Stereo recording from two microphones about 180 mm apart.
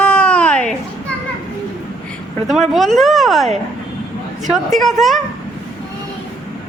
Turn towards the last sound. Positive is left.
turn(degrees=0)  # may be behind; listen again after turning